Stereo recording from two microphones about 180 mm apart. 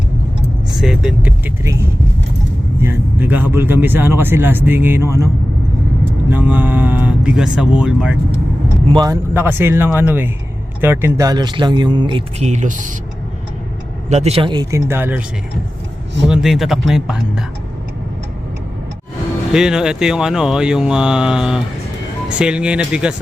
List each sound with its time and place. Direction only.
0.8 s speech: 5° right (ahead or behind)
6.3 s speech: 10° right (ahead or behind)
8.9 s speech: 20° right (ahead or behind); by 12.9 s 45° right (ahead or behind)
14.1 s speech: 35° right (ahead or behind); by 15.2 s 10° right (ahead or behind)
16.3 s speech: centre (ahead or behind)
19.5 s speech: 5° right (ahead or behind)